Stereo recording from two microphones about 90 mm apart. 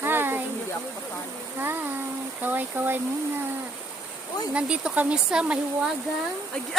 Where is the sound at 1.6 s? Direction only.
25° right (ahead or behind).